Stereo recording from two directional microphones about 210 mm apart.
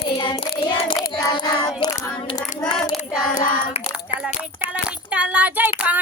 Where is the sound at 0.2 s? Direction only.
25° left (ahead or behind).